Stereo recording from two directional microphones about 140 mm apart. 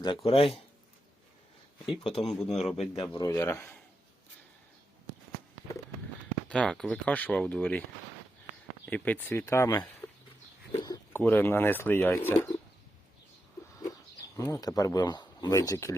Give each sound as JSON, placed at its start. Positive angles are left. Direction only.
{"t": 0.0, "sound": "speech", "side_deg": 35}
{"t": 1.9, "sound": "speech", "side_deg": 35}
{"t": 2.2, "sound": "speech", "side_deg": 5}
{"t": 2.7, "sound": "speech", "side_deg": 50}
{"t": 3.1, "sound": "speech", "side_deg": 20}
{"t": 6.5, "sound": "speech", "side_deg": 5}
{"t": 8.9, "sound": "speech", "side_deg": 10}
{"t": 10.7, "sound": "bird", "side_deg": 25}
{"t": 11.2, "sound": "speech", "side_deg": 15}
{"t": 14.3, "sound": "speech", "side_deg": 25}